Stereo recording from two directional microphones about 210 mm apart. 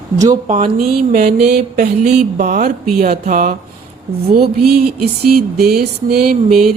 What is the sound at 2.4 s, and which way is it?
Mantra, 35° right (ahead or behind).